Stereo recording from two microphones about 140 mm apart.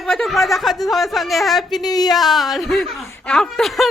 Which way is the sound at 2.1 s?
Centre (ahead or behind).